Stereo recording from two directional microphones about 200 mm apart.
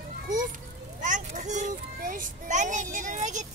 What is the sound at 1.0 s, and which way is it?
Child singing, 40° right (ahead or behind).